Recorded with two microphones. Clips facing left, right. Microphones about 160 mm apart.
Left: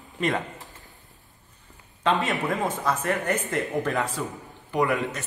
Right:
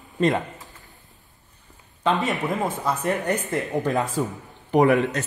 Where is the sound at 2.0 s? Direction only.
Centre (ahead or behind).